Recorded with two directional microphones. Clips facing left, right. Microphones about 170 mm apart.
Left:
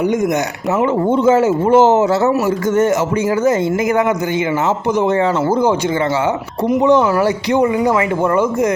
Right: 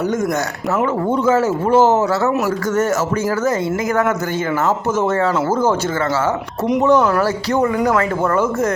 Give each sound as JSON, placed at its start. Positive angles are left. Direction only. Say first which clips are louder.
{"t": 1.1, "sound": "a man's voice", "louder": "left 3 dB", "side_deg": 25}
{"t": 7.5, "sound": "speech", "louder": "left 2 dB", "side_deg": 15}